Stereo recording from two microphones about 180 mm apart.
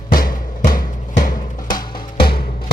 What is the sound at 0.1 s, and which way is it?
Music, 50° left (ahead or behind).